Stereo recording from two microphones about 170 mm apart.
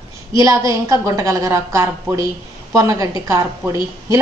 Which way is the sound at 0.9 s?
20° right (ahead or behind).